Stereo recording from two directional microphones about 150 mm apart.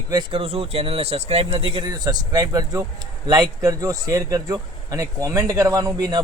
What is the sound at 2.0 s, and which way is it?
A man's voice, 25° right (ahead or behind).